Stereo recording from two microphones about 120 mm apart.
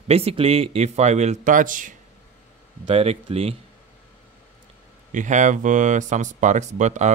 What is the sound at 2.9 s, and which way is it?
Speech, 55° right (ahead or behind).